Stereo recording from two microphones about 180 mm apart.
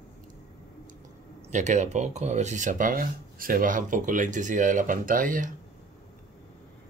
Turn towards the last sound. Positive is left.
turn(degrees=-50)  # may be behind; listen again after turning